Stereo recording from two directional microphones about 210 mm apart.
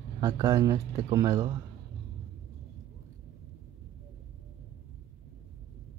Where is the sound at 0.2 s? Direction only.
15° right (ahead or behind).